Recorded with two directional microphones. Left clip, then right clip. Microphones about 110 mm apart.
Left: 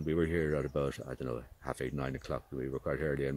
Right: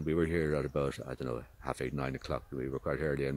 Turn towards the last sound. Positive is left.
turn(degrees=-30)  # may be behind; listen again after turning